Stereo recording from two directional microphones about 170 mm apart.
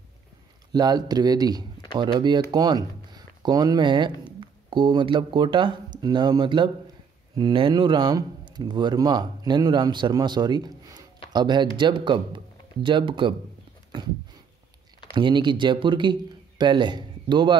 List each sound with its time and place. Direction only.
0.7 s a man's voice: 25° right (ahead or behind)
15.1 s a man's voice: 25° right (ahead or behind)